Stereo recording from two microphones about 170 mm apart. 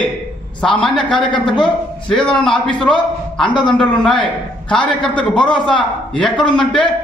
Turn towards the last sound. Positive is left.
turn(degrees=5)  # may be behind; listen again after turning